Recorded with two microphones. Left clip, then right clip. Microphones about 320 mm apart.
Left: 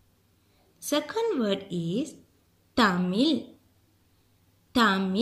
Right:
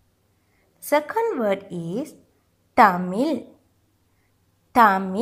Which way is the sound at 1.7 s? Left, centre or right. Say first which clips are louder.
Right 2 dB; right.